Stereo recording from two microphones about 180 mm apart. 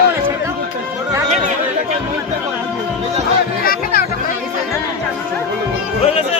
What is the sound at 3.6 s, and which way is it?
Music, 55° left (ahead or behind).